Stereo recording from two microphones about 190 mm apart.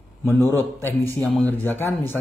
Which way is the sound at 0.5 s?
10° left (ahead or behind).